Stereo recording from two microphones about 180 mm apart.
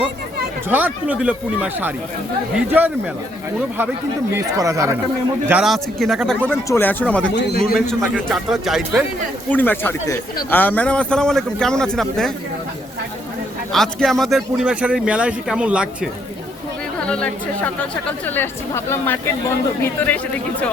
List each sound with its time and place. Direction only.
0.7 s speech: 10° right (ahead or behind)
4.4 s speech: 20° right (ahead or behind)
5.5 s speech: 5° right (ahead or behind)
6.5 s speech: 10° left (ahead or behind)
7.3 s a man's voice: 70° left (ahead or behind)
7.6 s speech: centre (ahead or behind)
9.5 s speech: 10° left (ahead or behind)
13.7 s speech: centre (ahead or behind)
17.1 s speech: 5° left (ahead or behind)